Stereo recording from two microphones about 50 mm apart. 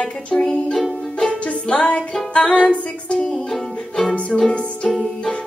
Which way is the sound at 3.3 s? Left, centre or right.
Centre.